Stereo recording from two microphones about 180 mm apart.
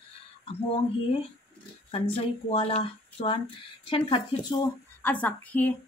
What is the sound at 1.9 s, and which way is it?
Speech, 30° left (ahead or behind).